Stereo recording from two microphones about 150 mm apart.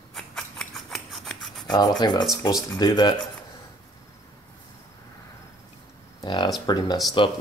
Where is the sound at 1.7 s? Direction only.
25° left (ahead or behind).